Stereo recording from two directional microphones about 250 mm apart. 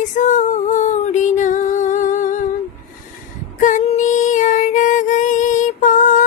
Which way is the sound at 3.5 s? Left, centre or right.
Left.